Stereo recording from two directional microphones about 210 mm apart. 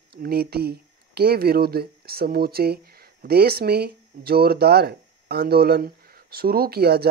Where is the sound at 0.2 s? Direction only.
50° right (ahead or behind).